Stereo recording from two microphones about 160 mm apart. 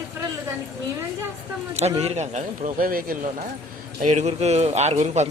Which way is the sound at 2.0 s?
40° right (ahead or behind).